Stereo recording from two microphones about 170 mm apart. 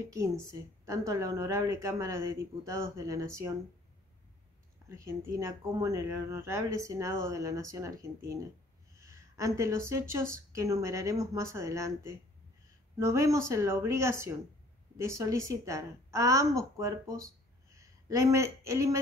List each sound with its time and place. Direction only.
0.0 s speech: 20° right (ahead or behind)
4.8 s speech: 15° right (ahead or behind)